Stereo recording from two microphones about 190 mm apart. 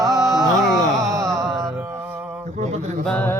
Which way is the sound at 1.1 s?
15° right (ahead or behind).